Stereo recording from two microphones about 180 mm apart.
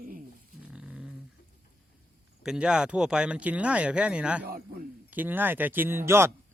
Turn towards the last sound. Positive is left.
turn(degrees=-15)  # may be behind; listen again after turning